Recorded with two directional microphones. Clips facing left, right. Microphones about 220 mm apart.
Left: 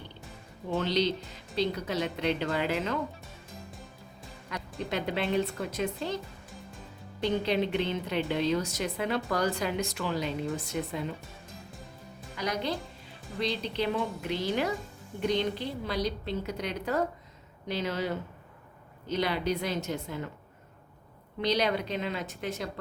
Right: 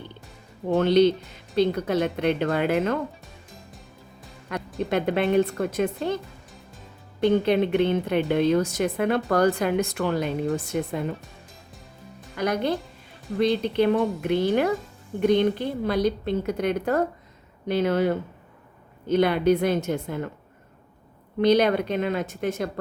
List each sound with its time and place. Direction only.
0.7 s speech: 55° right (ahead or behind)
4.4 s speech: 55° right (ahead or behind)
7.2 s speech: 55° right (ahead or behind)
12.4 s a woman's voice: 55° right (ahead or behind)
21.4 s a woman's voice: 55° right (ahead or behind)